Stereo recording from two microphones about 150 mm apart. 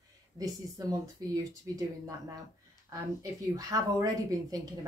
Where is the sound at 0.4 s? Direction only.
25° right (ahead or behind).